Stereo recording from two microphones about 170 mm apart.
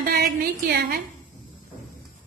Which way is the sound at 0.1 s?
65° right (ahead or behind).